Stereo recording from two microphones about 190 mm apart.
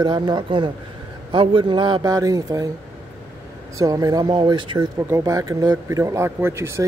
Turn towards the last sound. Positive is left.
turn(degrees=-15)  # may be behind; listen again after turning